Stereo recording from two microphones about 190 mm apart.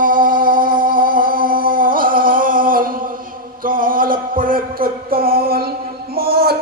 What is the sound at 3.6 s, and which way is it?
Music, 45° right (ahead or behind).